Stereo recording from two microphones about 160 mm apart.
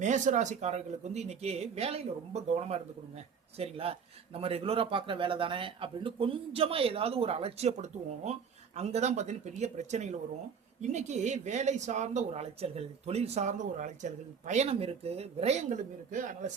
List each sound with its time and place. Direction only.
0.0 s a man's voice: 50° right (ahead or behind)